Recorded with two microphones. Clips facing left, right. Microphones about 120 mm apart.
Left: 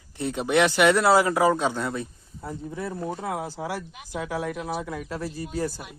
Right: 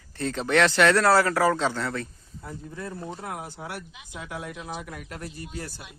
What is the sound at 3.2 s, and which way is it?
Speech, 90° left.